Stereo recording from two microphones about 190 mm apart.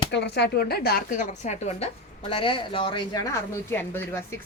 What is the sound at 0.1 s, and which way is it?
A woman's voice, 60° left (ahead or behind).